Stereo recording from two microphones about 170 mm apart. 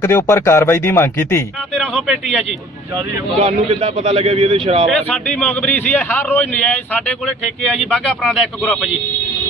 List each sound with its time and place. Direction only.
0.0 s a man's voice: 15° left (ahead or behind)
1.8 s speech: centre (ahead or behind)
3.4 s a man's voice: 30° right (ahead or behind)
4.9 s a man's voice: 10° left (ahead or behind)